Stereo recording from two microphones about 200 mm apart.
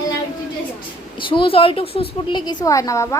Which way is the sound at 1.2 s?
25° left (ahead or behind).